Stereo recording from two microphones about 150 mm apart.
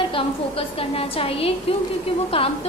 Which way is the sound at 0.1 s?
35° left (ahead or behind).